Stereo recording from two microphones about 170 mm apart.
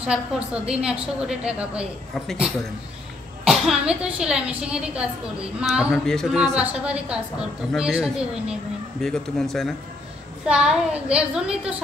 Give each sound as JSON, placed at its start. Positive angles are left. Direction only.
{"t": 0.0, "sound": "a woman's voice", "side_deg": -5}